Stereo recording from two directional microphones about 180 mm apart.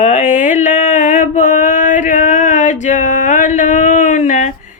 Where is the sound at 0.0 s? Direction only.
40° left (ahead or behind).